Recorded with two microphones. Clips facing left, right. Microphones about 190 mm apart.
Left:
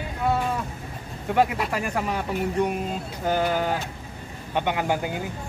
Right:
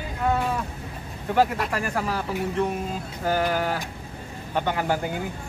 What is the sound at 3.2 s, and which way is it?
Speech, 20° left (ahead or behind).